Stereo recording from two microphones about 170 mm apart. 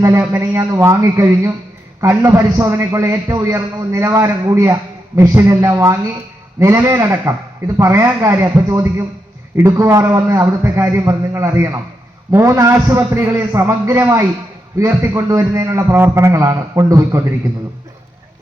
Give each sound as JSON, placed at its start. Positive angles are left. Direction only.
{"t": 0.0, "sound": "a man's voice", "side_deg": -15}